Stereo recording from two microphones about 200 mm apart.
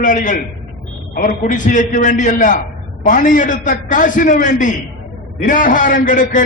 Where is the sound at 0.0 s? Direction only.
40° left (ahead or behind).